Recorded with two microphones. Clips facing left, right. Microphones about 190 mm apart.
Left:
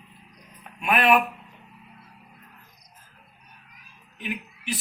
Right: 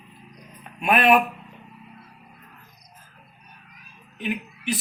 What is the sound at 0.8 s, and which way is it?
Speech, 25° right (ahead or behind).